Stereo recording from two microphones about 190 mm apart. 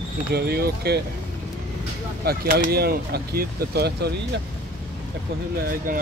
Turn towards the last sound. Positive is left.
turn(degrees=-50)  # may be behind; listen again after turning